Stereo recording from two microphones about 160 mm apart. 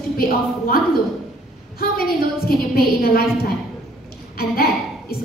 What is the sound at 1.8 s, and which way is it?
A woman's voice, 70° left (ahead or behind).